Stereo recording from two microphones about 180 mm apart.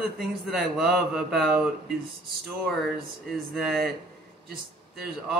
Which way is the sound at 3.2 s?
Centre (ahead or behind).